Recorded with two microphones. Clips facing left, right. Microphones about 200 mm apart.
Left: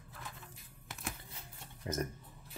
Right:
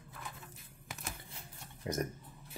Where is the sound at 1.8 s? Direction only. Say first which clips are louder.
Right 2 dB; 15° right (ahead or behind).